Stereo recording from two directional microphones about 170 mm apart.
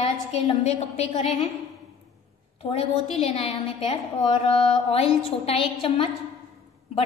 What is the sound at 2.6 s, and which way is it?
A woman's voice, 35° left (ahead or behind).